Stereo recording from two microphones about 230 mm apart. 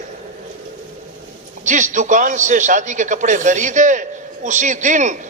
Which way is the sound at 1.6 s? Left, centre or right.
Right.